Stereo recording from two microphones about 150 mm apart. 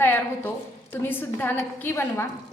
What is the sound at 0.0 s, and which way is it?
A woman's voice, 15° left (ahead or behind).